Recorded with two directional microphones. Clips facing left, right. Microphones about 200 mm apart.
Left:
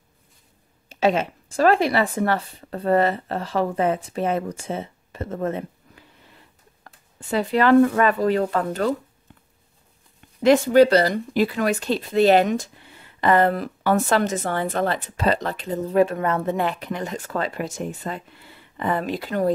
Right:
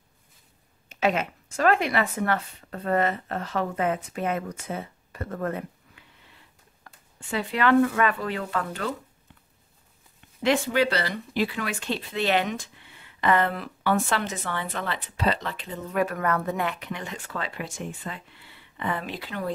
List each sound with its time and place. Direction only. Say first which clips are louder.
0.8 s speech: left 5 dB; 30° left (ahead or behind)
6.8 s speech: left 4 dB; 40° left (ahead or behind)
10.4 s speech: left 9 dB; 40° left (ahead or behind)